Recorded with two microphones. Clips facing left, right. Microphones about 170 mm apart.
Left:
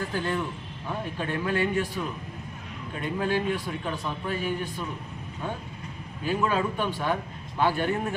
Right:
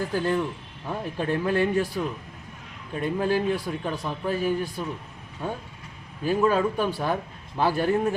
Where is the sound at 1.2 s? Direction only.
35° right (ahead or behind).